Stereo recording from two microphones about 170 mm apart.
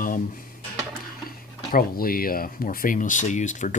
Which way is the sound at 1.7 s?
60° left (ahead or behind).